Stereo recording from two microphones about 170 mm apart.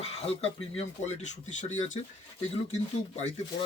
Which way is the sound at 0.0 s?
35° left (ahead or behind).